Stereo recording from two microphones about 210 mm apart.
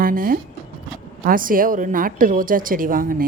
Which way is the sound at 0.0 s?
40° right (ahead or behind).